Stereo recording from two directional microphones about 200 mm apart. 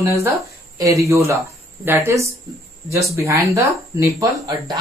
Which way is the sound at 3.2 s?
15° right (ahead or behind).